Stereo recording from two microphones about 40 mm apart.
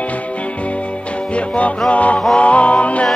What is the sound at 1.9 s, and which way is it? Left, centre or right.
Music, left.